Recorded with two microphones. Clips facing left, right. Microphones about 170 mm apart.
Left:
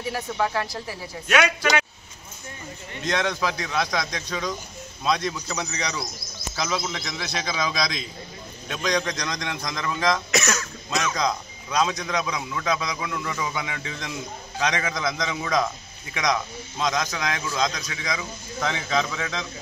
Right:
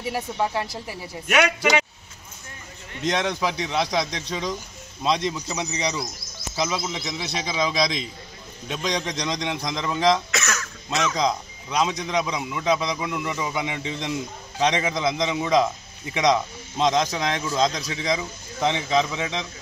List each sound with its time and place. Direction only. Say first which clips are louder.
0.1 s a man's voice: even; 20° right (ahead or behind)
3.0 s a man's voice: right 1 dB; 25° right (ahead or behind)
10.3 s cough: left 3 dB; 15° left (ahead or behind)
10.9 s a man's voice: right 2 dB; 25° right (ahead or behind)